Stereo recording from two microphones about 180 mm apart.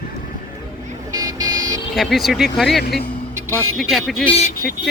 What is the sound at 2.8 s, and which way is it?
Speech, 55° left (ahead or behind).